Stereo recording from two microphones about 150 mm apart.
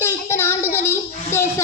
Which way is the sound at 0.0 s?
15° left (ahead or behind).